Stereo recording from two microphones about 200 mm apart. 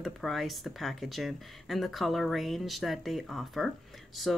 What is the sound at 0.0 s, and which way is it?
Speech, centre (ahead or behind).